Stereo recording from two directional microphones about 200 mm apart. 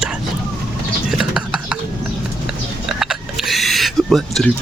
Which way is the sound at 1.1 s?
Centre (ahead or behind).